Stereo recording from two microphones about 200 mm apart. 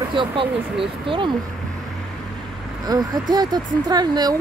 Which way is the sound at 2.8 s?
20° right (ahead or behind).